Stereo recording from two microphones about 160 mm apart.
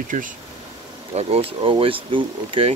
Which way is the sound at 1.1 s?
35° right (ahead or behind).